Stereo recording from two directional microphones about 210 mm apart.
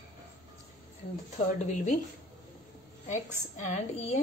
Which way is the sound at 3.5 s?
35° left (ahead or behind).